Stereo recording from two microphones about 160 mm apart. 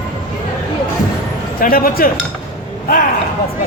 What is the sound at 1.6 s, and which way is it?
Speech, 60° left (ahead or behind).